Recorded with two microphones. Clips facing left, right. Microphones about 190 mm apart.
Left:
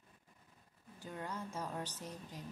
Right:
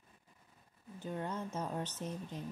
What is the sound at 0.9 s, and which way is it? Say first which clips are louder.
Speech: right 5 dB; 25° right (ahead or behind).